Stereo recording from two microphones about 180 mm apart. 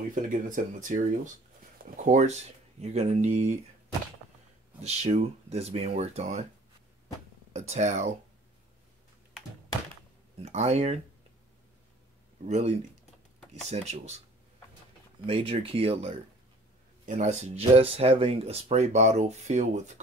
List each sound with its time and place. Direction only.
0.1 s speech: 45° right (ahead or behind)
4.8 s speech: 35° right (ahead or behind)
7.5 s speech: 40° right (ahead or behind)
10.4 s speech: 35° right (ahead or behind)
12.4 s speech: 40° right (ahead or behind)
15.2 s speech: 30° right (ahead or behind)